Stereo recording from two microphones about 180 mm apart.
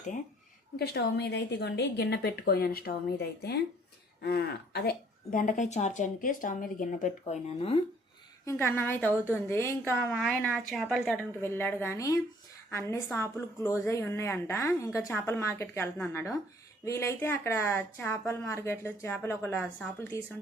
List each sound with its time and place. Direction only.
0.8 s a woman's voice: 65° left (ahead or behind); by 7.3 s 45° left (ahead or behind)
8.4 s speech: 15° left (ahead or behind)
11.3 s speech: 15° left (ahead or behind)